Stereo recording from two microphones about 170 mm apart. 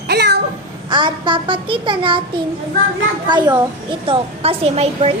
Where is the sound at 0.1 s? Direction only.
70° right (ahead or behind).